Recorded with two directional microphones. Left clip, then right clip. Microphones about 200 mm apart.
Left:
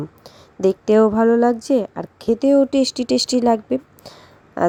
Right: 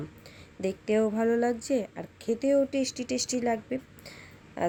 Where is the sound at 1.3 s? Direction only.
25° left (ahead or behind).